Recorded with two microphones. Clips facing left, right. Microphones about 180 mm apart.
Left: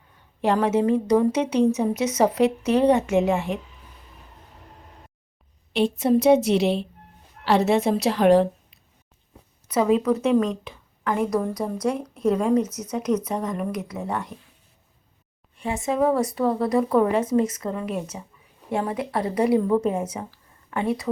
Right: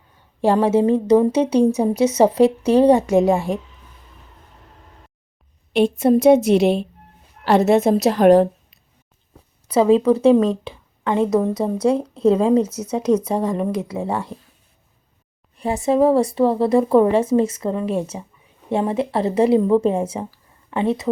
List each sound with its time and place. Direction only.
0.4 s speech: 30° right (ahead or behind)
5.7 s a woman's voice: 50° right (ahead or behind)
9.6 s a woman's voice: 30° right (ahead or behind)
15.5 s a woman's voice: 35° right (ahead or behind)